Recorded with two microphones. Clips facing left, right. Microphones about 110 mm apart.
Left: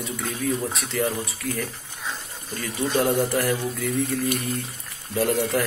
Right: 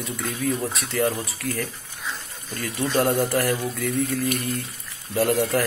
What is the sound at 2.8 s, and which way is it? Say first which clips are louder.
Speech: right 1 dB; 10° left (ahead or behind).